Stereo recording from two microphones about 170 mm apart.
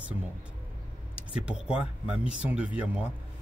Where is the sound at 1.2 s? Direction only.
5° right (ahead or behind).